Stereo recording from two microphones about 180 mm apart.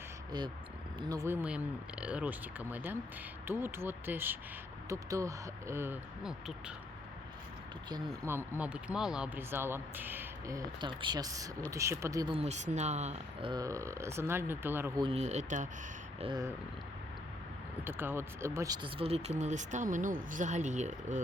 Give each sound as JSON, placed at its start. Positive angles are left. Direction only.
{"t": 0.3, "sound": "speech", "side_deg": -25}
{"t": 7.9, "sound": "speech", "side_deg": -20}
{"t": 8.5, "sound": "speech", "side_deg": -5}
{"t": 12.4, "sound": "speech", "side_deg": -40}
{"t": 13.5, "sound": "speech", "side_deg": -20}
{"t": 15.0, "sound": "speech", "side_deg": -35}
{"t": 16.2, "sound": "speech", "side_deg": -25}
{"t": 17.8, "sound": "speech", "side_deg": -10}